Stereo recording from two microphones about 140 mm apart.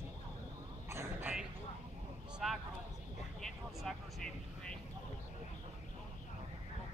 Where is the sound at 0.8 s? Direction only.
20° right (ahead or behind).